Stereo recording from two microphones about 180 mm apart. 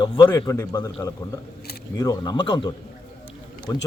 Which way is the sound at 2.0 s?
20° left (ahead or behind).